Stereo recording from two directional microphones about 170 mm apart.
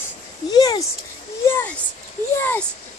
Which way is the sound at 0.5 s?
25° left (ahead or behind).